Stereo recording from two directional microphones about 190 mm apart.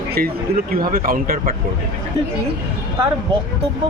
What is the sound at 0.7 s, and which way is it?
Speech, 50° right (ahead or behind).